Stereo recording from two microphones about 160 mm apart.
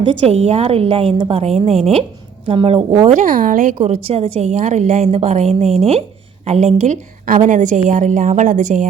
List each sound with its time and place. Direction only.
0.0 s a woman's voice: 40° right (ahead or behind)
3.1 s speech: 55° right (ahead or behind)
3.8 s a woman's voice: 40° right (ahead or behind)